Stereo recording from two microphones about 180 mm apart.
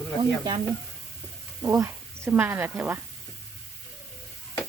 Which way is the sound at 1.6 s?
15° right (ahead or behind).